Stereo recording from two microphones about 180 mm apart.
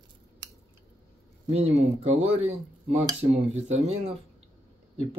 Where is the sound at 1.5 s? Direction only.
35° right (ahead or behind).